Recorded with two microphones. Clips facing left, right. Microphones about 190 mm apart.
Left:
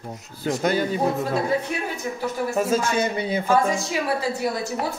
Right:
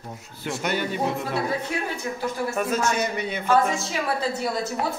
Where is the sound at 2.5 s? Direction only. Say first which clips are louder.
Left 4 dB; 25° left (ahead or behind).